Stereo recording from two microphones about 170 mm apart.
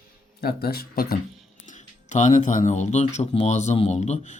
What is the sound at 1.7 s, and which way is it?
Speech, 45° left (ahead or behind).